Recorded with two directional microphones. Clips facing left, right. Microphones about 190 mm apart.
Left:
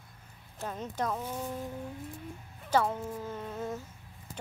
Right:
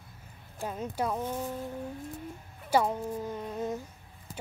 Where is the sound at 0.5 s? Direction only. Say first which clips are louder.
Right 2 dB; 10° right (ahead or behind).